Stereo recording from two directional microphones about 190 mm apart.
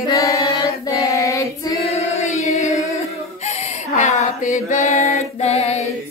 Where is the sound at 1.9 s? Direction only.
35° left (ahead or behind).